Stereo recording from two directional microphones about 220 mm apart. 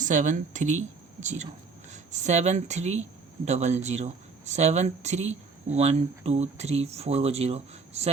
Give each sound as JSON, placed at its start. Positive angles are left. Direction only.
{"t": 0.0, "sound": "speech", "side_deg": -35}